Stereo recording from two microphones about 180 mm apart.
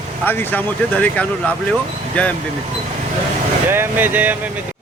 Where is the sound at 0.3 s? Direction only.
10° left (ahead or behind).